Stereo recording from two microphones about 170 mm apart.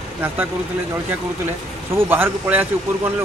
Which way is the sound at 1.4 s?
15° right (ahead or behind).